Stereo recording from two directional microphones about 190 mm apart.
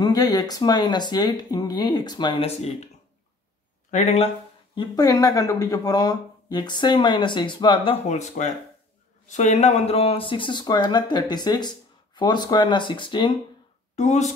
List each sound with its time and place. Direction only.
0.0 s speech: 20° left (ahead or behind)
3.9 s speech: 35° left (ahead or behind)
4.7 s speech: 20° left (ahead or behind)
13.9 s speech: 35° left (ahead or behind)